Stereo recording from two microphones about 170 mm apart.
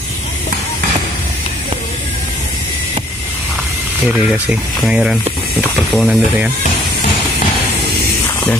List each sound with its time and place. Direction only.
4.1 s speech: 5° right (ahead or behind)